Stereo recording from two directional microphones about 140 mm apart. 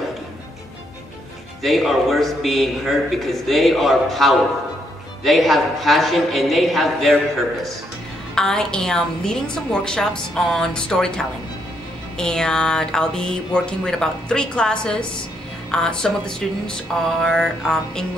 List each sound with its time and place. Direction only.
1.6 s speech: centre (ahead or behind)
8.4 s speech: 5° left (ahead or behind)